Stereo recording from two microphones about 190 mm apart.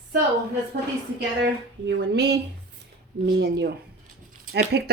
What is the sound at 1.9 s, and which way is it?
A woman's voice, 60° right (ahead or behind).